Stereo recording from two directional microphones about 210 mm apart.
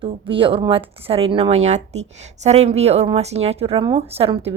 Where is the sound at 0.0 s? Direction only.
25° right (ahead or behind).